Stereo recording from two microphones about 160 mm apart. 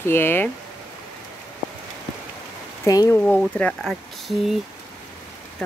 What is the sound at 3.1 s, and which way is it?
Speech, 5° left (ahead or behind).